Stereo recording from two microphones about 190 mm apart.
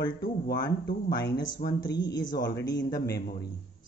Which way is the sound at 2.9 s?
55° left (ahead or behind).